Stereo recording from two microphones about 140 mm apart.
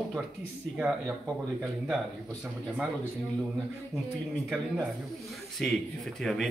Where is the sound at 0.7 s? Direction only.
15° right (ahead or behind).